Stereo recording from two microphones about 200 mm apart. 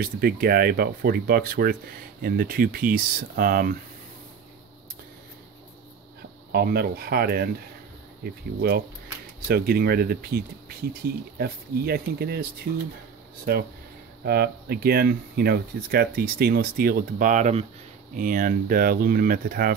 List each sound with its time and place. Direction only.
0.0 s speech: 50° right (ahead or behind)
6.5 s speech: 50° right (ahead or behind)